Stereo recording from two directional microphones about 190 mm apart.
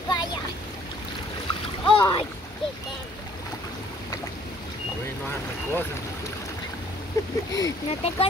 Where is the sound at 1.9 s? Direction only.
25° left (ahead or behind).